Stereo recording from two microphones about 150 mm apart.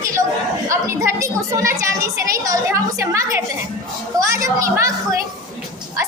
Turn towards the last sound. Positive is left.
turn(degrees=-20)  # may be behind; listen again after turning